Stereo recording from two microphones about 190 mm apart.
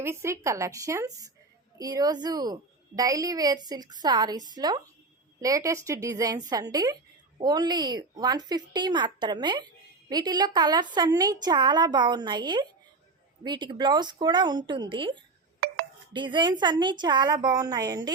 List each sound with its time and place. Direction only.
0.0 s a woman's voice: 15° right (ahead or behind)
15.6 s a sound: 55° right (ahead or behind)
16.1 s a woman's voice: 25° right (ahead or behind)